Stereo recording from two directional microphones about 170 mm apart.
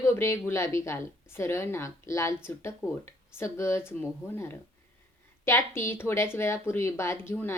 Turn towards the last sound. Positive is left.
turn(degrees=15)  # may be behind; listen again after turning